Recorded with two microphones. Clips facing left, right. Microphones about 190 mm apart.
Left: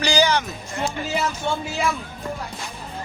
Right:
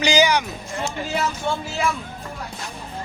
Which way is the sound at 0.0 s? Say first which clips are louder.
Right 2 dB; 15° right (ahead or behind).